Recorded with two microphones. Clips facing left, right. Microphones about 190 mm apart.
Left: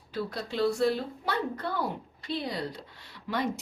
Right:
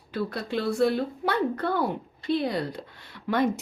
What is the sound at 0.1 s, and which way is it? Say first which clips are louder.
Speech: right 5 dB; 55° right (ahead or behind).